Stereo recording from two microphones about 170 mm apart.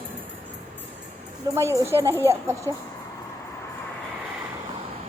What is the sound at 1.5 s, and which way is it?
Speech, 15° right (ahead or behind).